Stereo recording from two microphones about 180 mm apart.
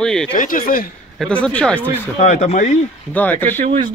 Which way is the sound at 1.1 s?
5° left (ahead or behind).